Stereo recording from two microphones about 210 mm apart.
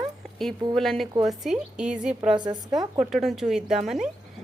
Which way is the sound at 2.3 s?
20° right (ahead or behind).